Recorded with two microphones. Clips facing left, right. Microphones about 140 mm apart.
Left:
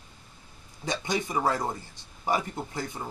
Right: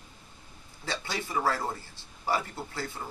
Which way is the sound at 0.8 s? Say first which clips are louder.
Left 5 dB; 15° left (ahead or behind).